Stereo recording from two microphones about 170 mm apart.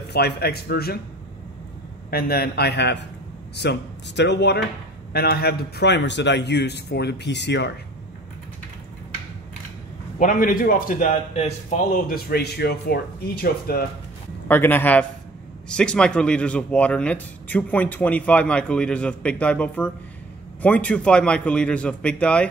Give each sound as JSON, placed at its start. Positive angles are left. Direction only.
{"t": 0.1, "sound": "a man's voice", "side_deg": 70}
{"t": 2.0, "sound": "a man's voice", "side_deg": 65}
{"t": 5.1, "sound": "a man's voice", "side_deg": 65}
{"t": 10.1, "sound": "a man's voice", "side_deg": 50}
{"t": 11.3, "sound": "speech", "side_deg": 40}
{"t": 14.5, "sound": "a man's voice", "side_deg": 10}